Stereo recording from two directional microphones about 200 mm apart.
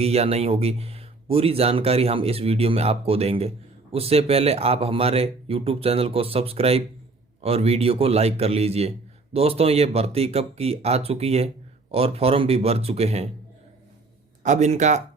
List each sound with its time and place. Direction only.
0.0 s speech: 30° right (ahead or behind)
14.4 s speech: 35° right (ahead or behind)